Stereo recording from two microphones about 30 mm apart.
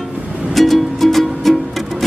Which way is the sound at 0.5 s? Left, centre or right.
Centre.